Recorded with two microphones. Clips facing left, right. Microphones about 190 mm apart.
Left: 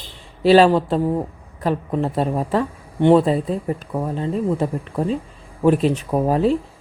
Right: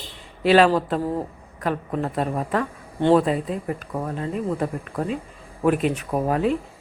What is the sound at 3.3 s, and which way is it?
Speech, 35° left (ahead or behind).